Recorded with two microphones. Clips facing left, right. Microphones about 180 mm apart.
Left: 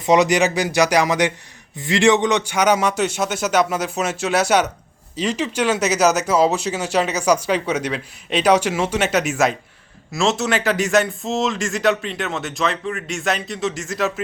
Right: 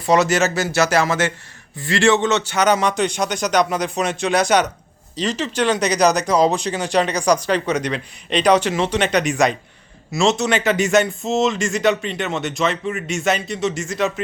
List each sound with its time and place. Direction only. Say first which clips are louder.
0.0 s speech: left 1 dB; 15° left (ahead or behind); by 14.1 s centre (ahead or behind)